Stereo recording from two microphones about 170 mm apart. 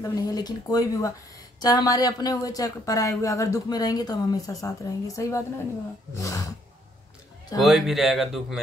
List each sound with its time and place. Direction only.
0.1 s speech: 20° left (ahead or behind)
7.5 s speech: centre (ahead or behind)